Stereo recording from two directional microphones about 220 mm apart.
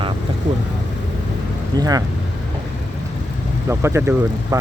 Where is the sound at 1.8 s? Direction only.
15° right (ahead or behind).